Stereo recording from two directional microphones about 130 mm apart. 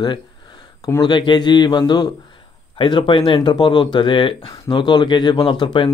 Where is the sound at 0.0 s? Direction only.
35° left (ahead or behind).